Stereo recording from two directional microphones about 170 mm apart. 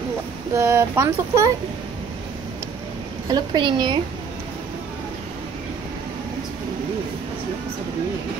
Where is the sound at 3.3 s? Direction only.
25° right (ahead or behind).